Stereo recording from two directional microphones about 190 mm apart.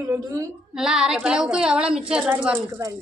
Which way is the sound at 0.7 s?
5° right (ahead or behind).